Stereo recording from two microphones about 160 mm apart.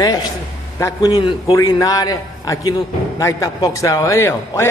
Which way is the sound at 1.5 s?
20° left (ahead or behind).